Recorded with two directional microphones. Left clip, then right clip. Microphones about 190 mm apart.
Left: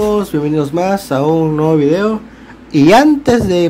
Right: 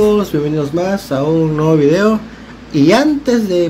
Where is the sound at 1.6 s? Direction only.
20° left (ahead or behind).